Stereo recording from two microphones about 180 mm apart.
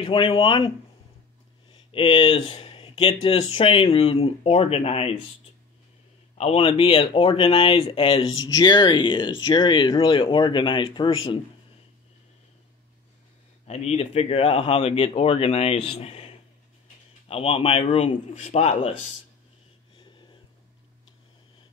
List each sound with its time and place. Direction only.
0.0 s speech: 30° left (ahead or behind)
6.3 s speech: 35° left (ahead or behind)
13.7 s speech: 35° left (ahead or behind)